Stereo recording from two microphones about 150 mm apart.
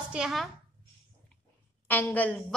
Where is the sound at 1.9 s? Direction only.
10° left (ahead or behind).